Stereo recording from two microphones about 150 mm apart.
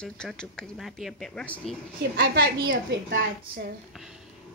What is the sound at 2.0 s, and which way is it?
A woman's voice, 80° right.